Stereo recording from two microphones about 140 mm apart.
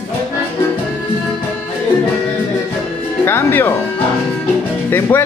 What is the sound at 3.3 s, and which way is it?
Speech, 15° left (ahead or behind).